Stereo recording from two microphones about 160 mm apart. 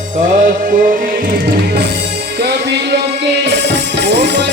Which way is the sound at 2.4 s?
90° right.